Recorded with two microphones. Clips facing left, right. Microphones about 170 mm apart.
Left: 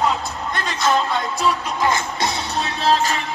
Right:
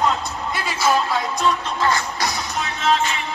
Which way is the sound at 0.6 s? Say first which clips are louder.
Even; 5° right (ahead or behind).